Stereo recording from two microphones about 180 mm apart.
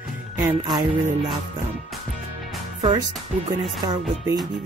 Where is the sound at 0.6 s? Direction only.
20° right (ahead or behind).